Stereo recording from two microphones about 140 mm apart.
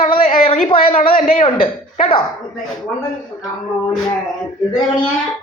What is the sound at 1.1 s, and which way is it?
Speech, 75° left (ahead or behind).